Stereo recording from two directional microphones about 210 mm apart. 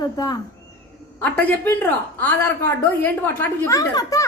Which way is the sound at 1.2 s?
10° left (ahead or behind).